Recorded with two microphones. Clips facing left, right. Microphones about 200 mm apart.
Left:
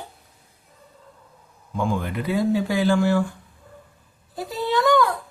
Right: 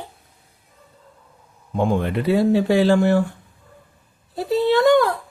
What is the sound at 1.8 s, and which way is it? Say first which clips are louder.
Speech: right 5 dB; 60° right (ahead or behind).